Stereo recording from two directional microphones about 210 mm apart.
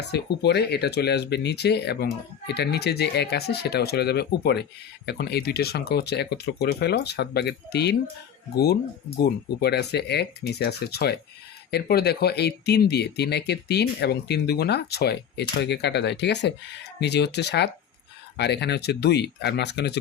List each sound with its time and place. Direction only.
0.1 s speech: 50° left (ahead or behind)